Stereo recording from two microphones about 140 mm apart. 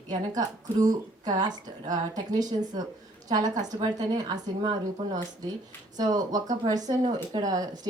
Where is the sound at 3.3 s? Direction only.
30° right (ahead or behind).